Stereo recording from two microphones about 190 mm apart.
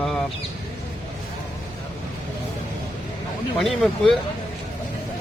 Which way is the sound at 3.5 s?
Centre (ahead or behind).